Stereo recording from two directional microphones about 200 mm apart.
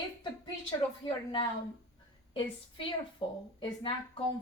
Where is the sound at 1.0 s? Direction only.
25° left (ahead or behind).